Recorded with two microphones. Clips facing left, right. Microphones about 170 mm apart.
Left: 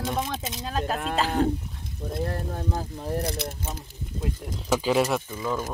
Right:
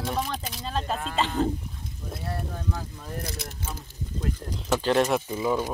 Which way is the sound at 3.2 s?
60° left (ahead or behind).